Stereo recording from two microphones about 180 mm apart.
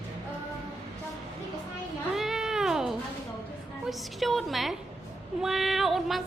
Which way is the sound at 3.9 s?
Centre (ahead or behind).